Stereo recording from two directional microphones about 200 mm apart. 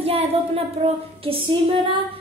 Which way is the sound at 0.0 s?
30° right (ahead or behind).